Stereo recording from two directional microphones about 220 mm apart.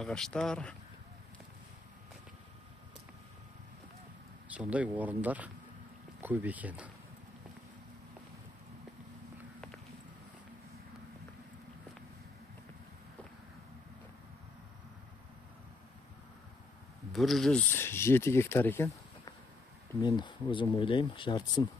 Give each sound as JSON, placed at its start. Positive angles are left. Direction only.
{"t": 0.0, "sound": "speech", "side_deg": 5}
{"t": 4.6, "sound": "speech", "side_deg": -5}
{"t": 17.1, "sound": "speech", "side_deg": 0}